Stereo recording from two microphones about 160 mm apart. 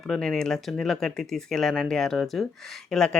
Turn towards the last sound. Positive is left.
turn(degrees=5)  # may be behind; listen again after turning